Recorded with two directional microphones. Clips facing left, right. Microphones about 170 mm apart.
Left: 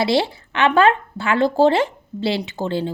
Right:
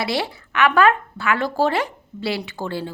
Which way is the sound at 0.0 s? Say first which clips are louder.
Left 6 dB; 25° left (ahead or behind).